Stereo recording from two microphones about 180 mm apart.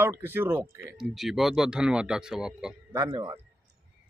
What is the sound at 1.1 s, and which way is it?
Speech, centre (ahead or behind).